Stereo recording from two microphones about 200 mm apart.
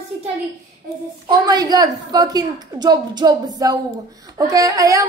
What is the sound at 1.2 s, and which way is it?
A woman's voice, 20° right (ahead or behind).